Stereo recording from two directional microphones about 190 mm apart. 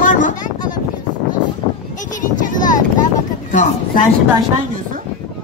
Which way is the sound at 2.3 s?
45° left (ahead or behind).